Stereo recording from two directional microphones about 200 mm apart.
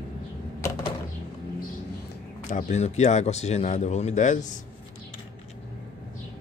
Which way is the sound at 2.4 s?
35° left (ahead or behind).